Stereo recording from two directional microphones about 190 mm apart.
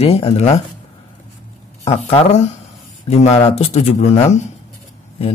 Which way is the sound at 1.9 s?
35° left (ahead or behind).